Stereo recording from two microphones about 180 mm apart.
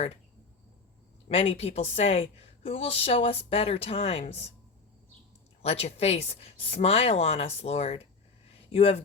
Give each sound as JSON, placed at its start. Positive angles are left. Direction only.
{"t": 1.3, "sound": "a woman's voice", "side_deg": 35}
{"t": 5.6, "sound": "a woman's voice", "side_deg": 35}